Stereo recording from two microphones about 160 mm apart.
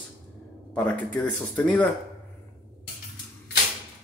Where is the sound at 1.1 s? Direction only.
10° left (ahead or behind).